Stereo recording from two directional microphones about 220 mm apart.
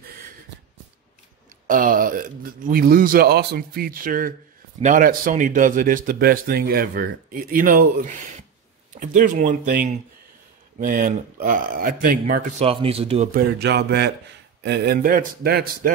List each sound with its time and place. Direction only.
1.7 s a man's voice: 40° right (ahead or behind)
13.3 s speech: 45° right (ahead or behind)